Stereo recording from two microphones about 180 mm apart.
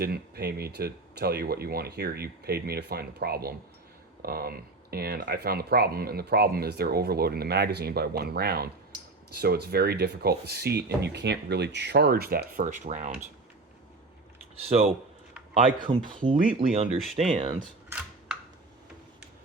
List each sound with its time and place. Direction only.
0.0 s speech: 60° right (ahead or behind); by 13.2 s 45° right (ahead or behind)
14.7 s speech: 35° right (ahead or behind)